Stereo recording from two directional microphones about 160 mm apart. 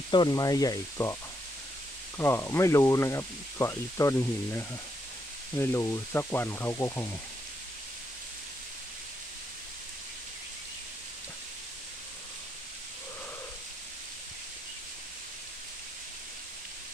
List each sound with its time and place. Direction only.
0.1 s speech: 25° left (ahead or behind)
2.1 s speech: 15° left (ahead or behind)